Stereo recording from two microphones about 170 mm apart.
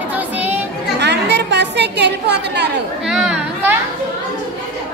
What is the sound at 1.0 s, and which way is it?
A woman's voice, 85° right.